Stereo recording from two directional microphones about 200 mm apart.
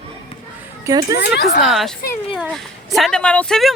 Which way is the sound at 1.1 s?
55° left (ahead or behind).